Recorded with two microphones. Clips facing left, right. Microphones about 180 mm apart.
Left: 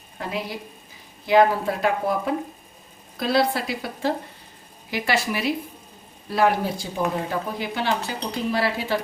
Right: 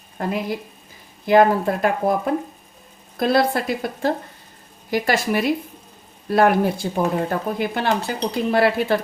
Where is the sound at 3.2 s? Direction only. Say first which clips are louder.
Right 3 dB; 50° right (ahead or behind).